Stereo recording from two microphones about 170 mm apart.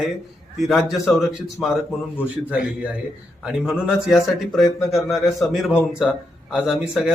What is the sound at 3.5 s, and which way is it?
Speech, 5° right (ahead or behind).